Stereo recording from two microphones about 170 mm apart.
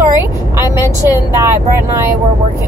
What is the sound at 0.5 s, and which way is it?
Speech, 15° right (ahead or behind).